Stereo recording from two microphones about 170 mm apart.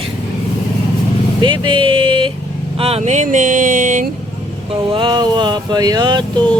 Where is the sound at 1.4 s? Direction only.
30° right (ahead or behind).